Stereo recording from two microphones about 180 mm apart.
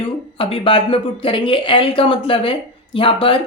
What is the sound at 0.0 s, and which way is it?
A woman's voice, 30° left (ahead or behind).